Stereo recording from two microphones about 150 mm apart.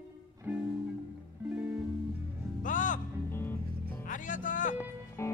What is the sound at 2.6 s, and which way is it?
Music, 60° left (ahead or behind).